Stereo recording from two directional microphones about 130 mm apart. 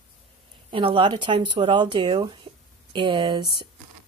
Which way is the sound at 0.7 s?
40° right (ahead or behind).